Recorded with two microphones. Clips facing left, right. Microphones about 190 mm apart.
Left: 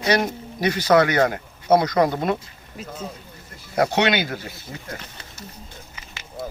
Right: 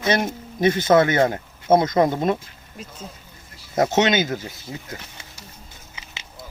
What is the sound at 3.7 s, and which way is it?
Speech, 20° right (ahead or behind).